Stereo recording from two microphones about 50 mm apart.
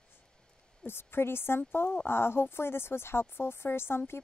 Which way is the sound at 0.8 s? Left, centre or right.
Left.